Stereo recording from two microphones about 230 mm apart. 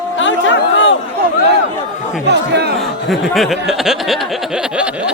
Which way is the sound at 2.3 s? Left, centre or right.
Right.